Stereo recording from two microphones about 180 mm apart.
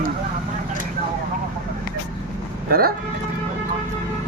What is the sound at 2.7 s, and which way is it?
Speech, 55° right (ahead or behind).